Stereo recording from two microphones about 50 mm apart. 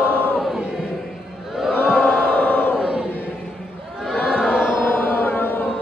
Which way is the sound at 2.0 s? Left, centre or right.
Centre.